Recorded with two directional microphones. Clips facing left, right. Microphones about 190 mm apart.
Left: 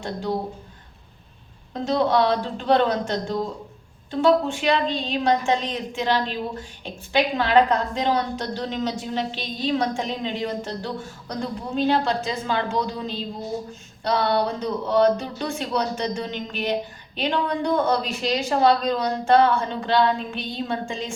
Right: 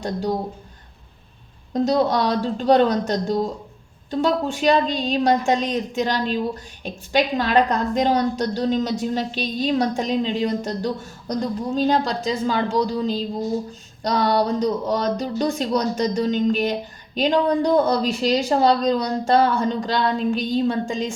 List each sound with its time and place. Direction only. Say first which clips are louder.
1.7 s a woman's voice: right 2 dB; 40° right (ahead or behind)